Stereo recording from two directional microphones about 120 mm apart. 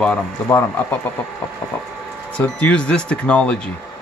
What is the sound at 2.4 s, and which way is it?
Speech, 10° left (ahead or behind).